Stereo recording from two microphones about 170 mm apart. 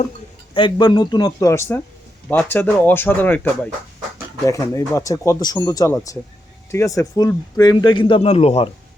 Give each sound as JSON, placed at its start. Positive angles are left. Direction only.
{"t": 0.5, "sound": "speech", "side_deg": 25}